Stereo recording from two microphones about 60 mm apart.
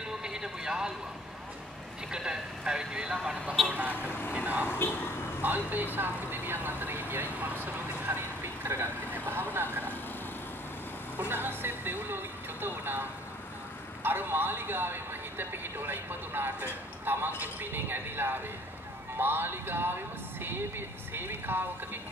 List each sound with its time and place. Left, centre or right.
0.0 s a sound: centre
2.0 s speech: centre
3.6 s speech: right
4.6 s speech: left
5.4 s speech: right
5.9 s vehicle: right
8.1 s vehicle: right
8.6 s vehicle: right
11.1 s vehicle: right
14.0 s speech: right